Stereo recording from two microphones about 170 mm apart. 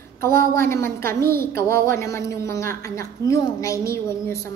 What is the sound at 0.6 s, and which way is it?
A woman's voice, 15° left (ahead or behind).